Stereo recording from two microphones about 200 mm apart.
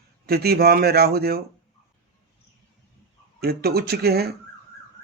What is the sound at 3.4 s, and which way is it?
Speech, 50° right (ahead or behind).